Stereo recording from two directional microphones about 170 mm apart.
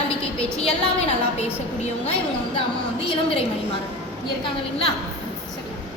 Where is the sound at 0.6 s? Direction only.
40° left (ahead or behind).